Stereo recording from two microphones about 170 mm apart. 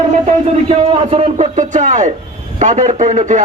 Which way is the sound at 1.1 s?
45° right (ahead or behind).